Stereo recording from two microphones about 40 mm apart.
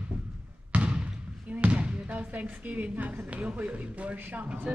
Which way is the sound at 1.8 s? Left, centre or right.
Right.